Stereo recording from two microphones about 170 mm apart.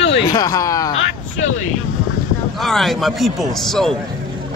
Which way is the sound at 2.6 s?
Centre (ahead or behind).